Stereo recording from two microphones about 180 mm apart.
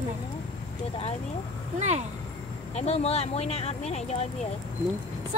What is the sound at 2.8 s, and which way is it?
Speech, 35° left (ahead or behind).